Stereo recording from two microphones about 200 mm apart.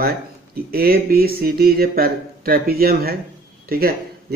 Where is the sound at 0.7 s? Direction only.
50° right (ahead or behind).